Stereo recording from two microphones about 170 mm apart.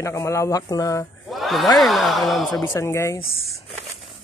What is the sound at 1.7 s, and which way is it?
Speech, centre (ahead or behind).